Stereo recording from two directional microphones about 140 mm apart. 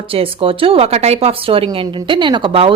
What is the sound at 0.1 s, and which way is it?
Speech, 40° right (ahead or behind).